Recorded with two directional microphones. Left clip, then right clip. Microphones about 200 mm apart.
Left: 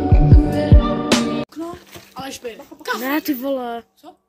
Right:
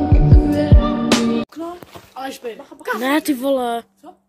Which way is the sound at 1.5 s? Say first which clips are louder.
Right 1 dB; 15° right (ahead or behind).